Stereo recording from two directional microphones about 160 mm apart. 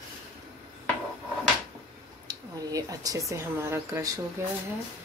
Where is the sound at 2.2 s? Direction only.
20° right (ahead or behind).